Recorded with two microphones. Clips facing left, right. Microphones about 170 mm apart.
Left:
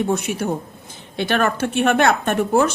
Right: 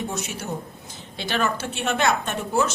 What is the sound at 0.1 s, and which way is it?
A woman's voice, 60° left (ahead or behind).